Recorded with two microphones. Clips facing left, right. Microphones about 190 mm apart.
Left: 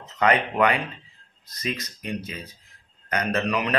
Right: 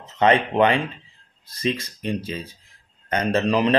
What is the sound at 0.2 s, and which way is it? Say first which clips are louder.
Speech: right 3 dB; 25° right (ahead or behind).